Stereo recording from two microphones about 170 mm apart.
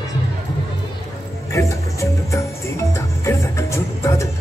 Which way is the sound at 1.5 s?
15° left (ahead or behind).